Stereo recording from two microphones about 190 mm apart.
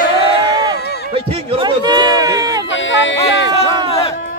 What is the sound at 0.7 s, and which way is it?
Music, 60° left (ahead or behind).